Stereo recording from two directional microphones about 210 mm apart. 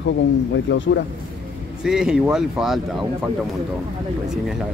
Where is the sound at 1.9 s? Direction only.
5° right (ahead or behind).